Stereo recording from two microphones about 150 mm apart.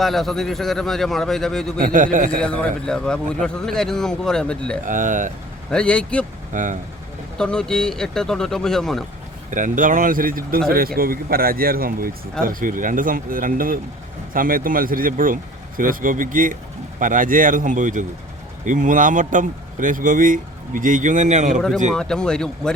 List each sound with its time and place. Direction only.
0.0 s a man's voice: centre (ahead or behind)
1.8 s speech: 65° right (ahead or behind)
2.4 s a man's voice: 5° left (ahead or behind)
4.9 s speech: 60° right (ahead or behind)
5.7 s speech: 5° left (ahead or behind)
6.5 s speech: 60° right (ahead or behind)
7.3 s a man's voice: 5° left (ahead or behind)
9.5 s speech: 60° right (ahead or behind)
10.7 s speech: 80° right; by 21.6 s 55° right (ahead or behind)
21.9 s a man's voice: 5° left (ahead or behind)